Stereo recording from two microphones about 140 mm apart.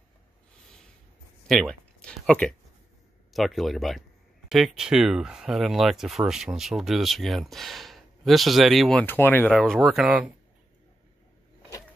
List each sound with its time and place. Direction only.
1.5 s speech: 5° left (ahead or behind)
9.0 s speech: 15° left (ahead or behind)
9.5 s speech: 5° right (ahead or behind)